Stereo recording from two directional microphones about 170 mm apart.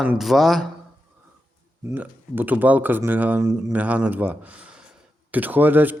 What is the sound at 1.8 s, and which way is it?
Speech, 10° right (ahead or behind).